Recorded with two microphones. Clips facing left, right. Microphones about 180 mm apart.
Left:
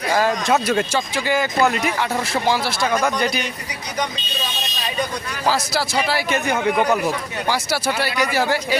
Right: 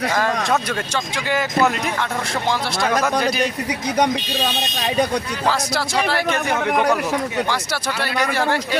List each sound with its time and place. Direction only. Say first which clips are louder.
0.4 s speech: left 3 dB; 10° left (ahead or behind)
3.9 s speech: right 7 dB; 65° right (ahead or behind)
5.5 s speech: left 2 dB; 5° left (ahead or behind)